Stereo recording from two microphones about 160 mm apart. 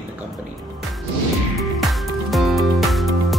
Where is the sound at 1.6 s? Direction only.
Centre (ahead or behind).